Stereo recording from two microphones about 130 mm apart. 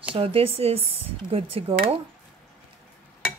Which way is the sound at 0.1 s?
45° right (ahead or behind).